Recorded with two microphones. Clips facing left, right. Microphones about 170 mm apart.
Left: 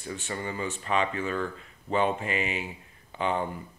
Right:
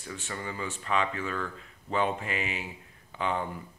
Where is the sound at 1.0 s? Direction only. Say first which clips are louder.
Left 3 dB; 20° left (ahead or behind).